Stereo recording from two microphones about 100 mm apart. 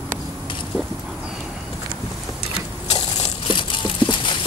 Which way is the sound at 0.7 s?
5° left (ahead or behind).